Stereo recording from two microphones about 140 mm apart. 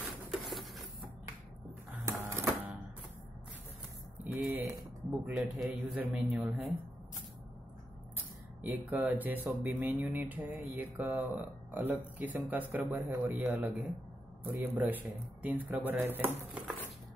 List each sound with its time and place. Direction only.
0.3 s patter: centre (ahead or behind)
2.0 s typewriter: 20° right (ahead or behind)
4.2 s a sound: 15° right (ahead or behind)
5.2 s a man's voice: centre (ahead or behind)
8.2 s speech: 10° right (ahead or behind)